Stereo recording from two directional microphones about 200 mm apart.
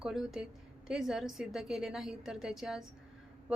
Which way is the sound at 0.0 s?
Centre (ahead or behind).